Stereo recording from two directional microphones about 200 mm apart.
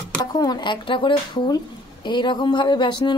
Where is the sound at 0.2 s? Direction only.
20° left (ahead or behind).